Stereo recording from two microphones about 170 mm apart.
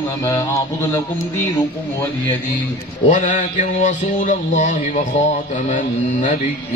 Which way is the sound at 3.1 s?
45° left (ahead or behind).